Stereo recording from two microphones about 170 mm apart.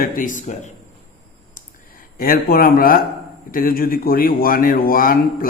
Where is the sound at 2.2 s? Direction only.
60° left (ahead or behind).